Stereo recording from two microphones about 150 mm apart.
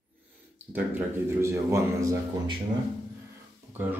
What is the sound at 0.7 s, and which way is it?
A man's voice, 15° right (ahead or behind).